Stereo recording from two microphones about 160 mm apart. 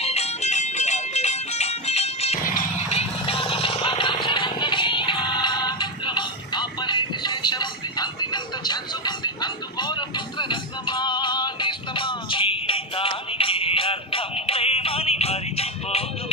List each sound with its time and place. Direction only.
0.0 s music: 40° left (ahead or behind)
2.4 s music: 60° left (ahead or behind)
2.9 s vehicle: 40° left (ahead or behind)